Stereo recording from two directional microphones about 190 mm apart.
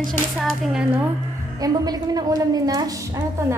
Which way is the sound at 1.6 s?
20° right (ahead or behind).